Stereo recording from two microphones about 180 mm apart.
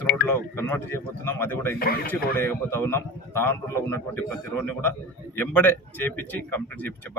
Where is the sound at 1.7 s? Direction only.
55° left (ahead or behind).